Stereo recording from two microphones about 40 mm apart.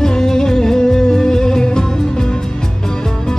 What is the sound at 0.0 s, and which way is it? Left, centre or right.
Music, centre.